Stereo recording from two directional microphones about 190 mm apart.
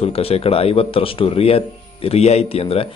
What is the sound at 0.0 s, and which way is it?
Speech, 30° left (ahead or behind).